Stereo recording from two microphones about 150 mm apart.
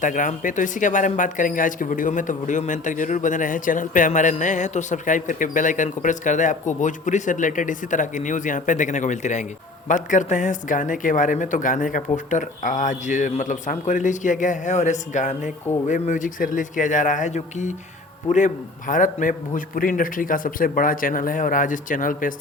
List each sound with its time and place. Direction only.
0.0 s speech: 60° left (ahead or behind)